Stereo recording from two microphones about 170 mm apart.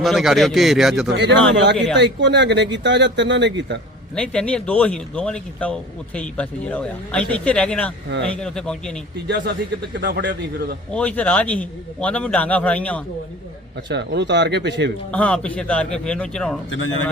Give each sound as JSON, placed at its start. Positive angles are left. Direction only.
{"t": 0.0, "sound": "a man's voice", "side_deg": 0}
{"t": 1.1, "sound": "speech", "side_deg": -90}
{"t": 1.7, "sound": "a man's voice", "side_deg": 0}
{"t": 2.0, "sound": "speech", "side_deg": -90}
{"t": 4.1, "sound": "a man's voice", "side_deg": 5}
{"t": 9.2, "sound": "a man's voice", "side_deg": -75}
{"t": 10.0, "sound": "a man's voice", "side_deg": -90}
{"t": 10.9, "sound": "a man's voice", "side_deg": 10}
{"t": 13.8, "sound": "speech", "side_deg": -90}
{"t": 15.1, "sound": "a man's voice", "side_deg": 10}